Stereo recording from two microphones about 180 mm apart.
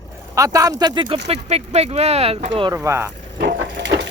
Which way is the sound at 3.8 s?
85° right.